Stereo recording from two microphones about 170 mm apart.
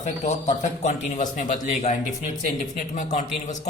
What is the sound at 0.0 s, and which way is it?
A man's voice, 40° left (ahead or behind).